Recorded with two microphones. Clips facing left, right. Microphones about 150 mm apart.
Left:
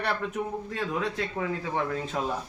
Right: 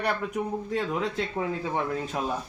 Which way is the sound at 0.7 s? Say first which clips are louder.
Right 2 dB; 20° right (ahead or behind).